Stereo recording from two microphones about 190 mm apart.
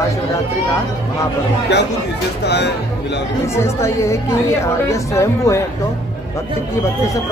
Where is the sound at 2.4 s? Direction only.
60° left (ahead or behind).